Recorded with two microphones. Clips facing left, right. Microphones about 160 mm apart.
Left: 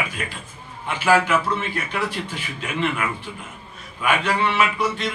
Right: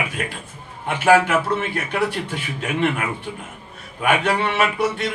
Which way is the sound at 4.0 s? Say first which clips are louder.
Right 2 dB; 55° right (ahead or behind).